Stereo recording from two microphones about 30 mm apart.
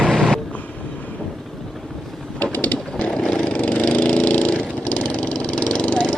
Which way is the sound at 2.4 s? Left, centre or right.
Left.